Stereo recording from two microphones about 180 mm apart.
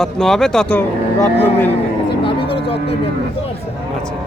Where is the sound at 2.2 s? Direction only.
30° left (ahead or behind).